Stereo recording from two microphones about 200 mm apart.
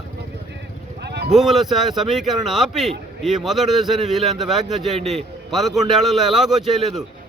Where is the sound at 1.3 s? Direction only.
Centre (ahead or behind).